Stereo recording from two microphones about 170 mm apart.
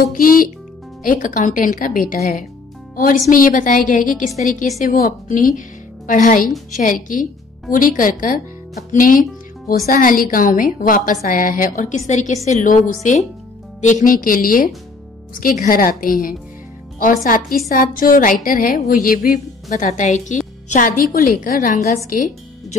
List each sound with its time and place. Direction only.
0.1 s a woman's voice: 55° left (ahead or behind)
4.9 s a woman's voice: 55° left (ahead or behind)